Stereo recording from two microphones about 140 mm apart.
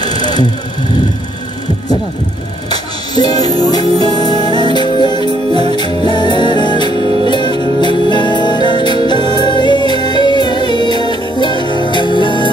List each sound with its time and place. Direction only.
0.0 s music: 40° right (ahead or behind)
3.2 s music: 30° left (ahead or behind)